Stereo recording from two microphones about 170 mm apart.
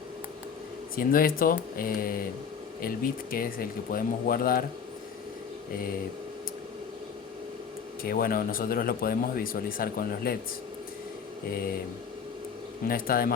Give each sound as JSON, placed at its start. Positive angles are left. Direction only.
{"t": 0.9, "sound": "speech", "side_deg": 55}
{"t": 8.0, "sound": "speech", "side_deg": 60}
{"t": 12.9, "sound": "speech", "side_deg": 60}